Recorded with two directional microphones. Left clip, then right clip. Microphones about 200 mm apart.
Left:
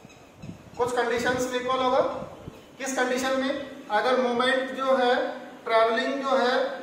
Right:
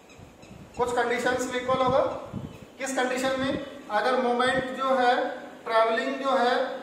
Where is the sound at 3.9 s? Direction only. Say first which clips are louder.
Left 1 dB; 15° right (ahead or behind).